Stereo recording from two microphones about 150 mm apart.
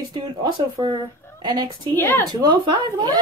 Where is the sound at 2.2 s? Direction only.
30° right (ahead or behind).